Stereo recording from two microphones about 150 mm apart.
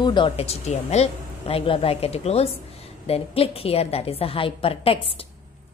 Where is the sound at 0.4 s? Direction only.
45° left (ahead or behind).